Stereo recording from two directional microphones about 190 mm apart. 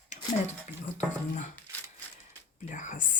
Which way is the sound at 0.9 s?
40° left (ahead or behind).